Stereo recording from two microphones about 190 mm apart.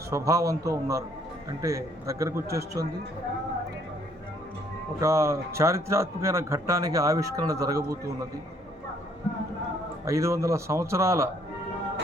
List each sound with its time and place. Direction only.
0.1 s speech: 15° right (ahead or behind)
4.9 s speech: 15° right (ahead or behind)
10.1 s speech: 15° right (ahead or behind)